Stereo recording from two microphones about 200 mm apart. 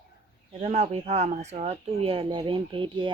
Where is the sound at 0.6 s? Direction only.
35° right (ahead or behind).